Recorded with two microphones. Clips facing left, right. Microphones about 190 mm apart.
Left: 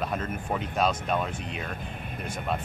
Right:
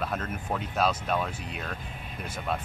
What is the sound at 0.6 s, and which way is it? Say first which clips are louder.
Speech: left 1 dB; 5° right (ahead or behind).